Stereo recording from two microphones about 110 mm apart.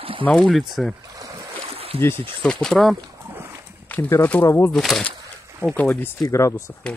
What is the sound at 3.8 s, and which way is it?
Speech, 15° left (ahead or behind).